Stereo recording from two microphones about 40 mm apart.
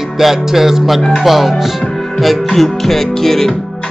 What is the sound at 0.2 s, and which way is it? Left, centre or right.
Music, centre.